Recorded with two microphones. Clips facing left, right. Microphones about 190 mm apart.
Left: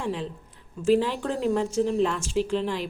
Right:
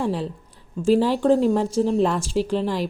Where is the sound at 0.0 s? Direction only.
35° right (ahead or behind).